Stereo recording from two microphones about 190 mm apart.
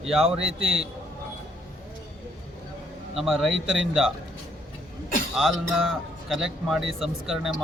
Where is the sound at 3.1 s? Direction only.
Centre (ahead or behind).